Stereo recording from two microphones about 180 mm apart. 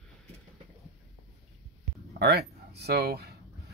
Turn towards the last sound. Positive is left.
turn(degrees=-60)  # may be behind; listen again after turning